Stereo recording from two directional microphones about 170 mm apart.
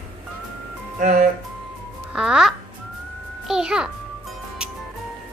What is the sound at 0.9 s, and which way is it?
Speech, 50° right (ahead or behind).